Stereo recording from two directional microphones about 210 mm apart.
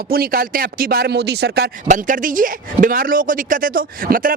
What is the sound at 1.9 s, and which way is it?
Speech, 40° right (ahead or behind).